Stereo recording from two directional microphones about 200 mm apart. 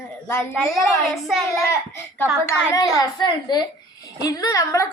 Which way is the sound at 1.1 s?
Centre (ahead or behind).